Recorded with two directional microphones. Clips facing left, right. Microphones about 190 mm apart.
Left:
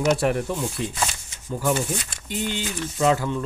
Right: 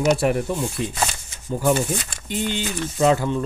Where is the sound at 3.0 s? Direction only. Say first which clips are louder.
Right 3 dB; 25° right (ahead or behind).